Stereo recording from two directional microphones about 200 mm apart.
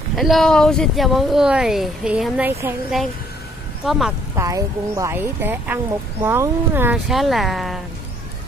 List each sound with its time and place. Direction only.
0.1 s speech: centre (ahead or behind)
3.8 s speech: centre (ahead or behind)
4.4 s speech: 15° right (ahead or behind); by 7.8 s centre (ahead or behind)